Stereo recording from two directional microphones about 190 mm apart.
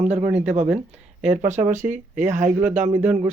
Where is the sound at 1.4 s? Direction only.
40° right (ahead or behind).